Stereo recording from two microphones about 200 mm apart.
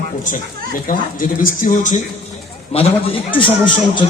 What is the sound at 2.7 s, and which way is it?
A man's voice, 30° left (ahead or behind).